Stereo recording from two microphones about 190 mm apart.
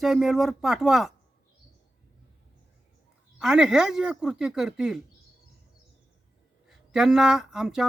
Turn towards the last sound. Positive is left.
turn(degrees=-5)  # may be behind; listen again after turning